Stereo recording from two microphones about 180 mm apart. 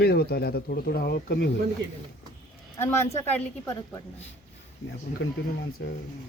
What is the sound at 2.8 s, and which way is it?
Speech, 15° left (ahead or behind).